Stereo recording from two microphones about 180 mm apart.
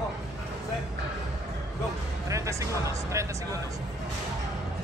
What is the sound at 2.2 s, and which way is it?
Speech, 15° right (ahead or behind).